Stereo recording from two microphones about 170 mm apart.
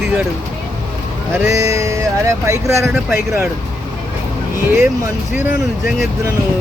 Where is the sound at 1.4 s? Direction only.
15° right (ahead or behind).